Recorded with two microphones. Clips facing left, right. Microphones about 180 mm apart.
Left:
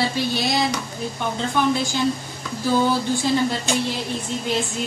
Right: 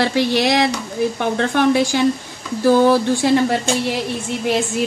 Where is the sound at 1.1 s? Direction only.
75° right (ahead or behind).